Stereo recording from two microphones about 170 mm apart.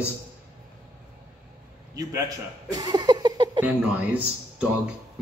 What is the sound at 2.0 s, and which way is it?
Speech, 20° right (ahead or behind).